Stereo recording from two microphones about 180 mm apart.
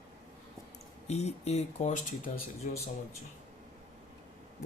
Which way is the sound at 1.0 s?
40° left (ahead or behind).